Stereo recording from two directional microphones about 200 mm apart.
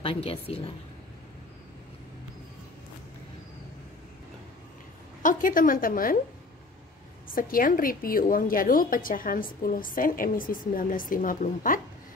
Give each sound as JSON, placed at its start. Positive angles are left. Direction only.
{"t": 0.0, "sound": "a woman's voice", "side_deg": 30}
{"t": 5.2, "sound": "a woman's voice", "side_deg": 45}
{"t": 7.2, "sound": "a woman's voice", "side_deg": 45}